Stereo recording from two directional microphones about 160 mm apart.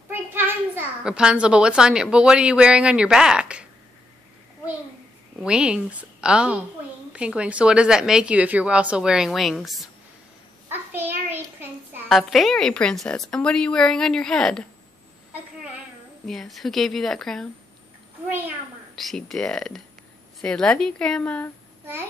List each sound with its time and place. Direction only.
0.1 s a child's voice: 10° right (ahead or behind)
5.4 s a woman's voice: 5° right (ahead or behind)
10.7 s a sound: 15° right (ahead or behind)
12.1 s a woman's voice: centre (ahead or behind)
16.3 s a woman's voice: centre (ahead or behind)
18.9 s a woman's voice: centre (ahead or behind)